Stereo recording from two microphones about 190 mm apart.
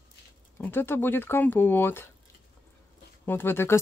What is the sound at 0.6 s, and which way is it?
Speech, 10° left (ahead or behind).